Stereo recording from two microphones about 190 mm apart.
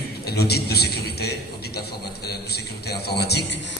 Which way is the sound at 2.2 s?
55° left (ahead or behind).